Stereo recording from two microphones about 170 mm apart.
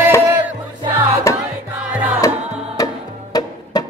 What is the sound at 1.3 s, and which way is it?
Music, 15° left (ahead or behind).